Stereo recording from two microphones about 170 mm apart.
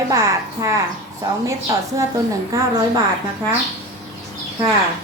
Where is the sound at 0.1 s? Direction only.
20° right (ahead or behind).